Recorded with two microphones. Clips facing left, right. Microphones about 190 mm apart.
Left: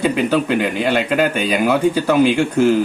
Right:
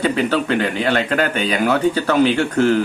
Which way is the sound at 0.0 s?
10° left (ahead or behind).